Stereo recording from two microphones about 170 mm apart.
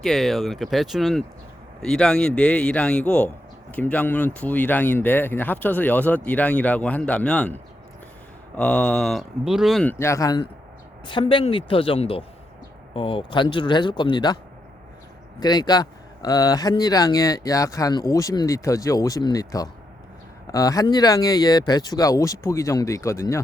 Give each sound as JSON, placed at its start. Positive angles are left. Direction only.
{"t": 0.0, "sound": "a man's voice", "side_deg": 0}
{"t": 9.8, "sound": "a woman's voice", "side_deg": 15}
{"t": 15.4, "sound": "speech", "side_deg": 25}